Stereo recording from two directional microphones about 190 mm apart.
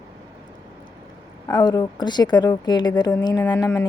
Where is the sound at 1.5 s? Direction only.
20° left (ahead or behind).